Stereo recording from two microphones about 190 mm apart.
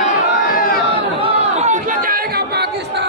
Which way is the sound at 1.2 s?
35° right (ahead or behind).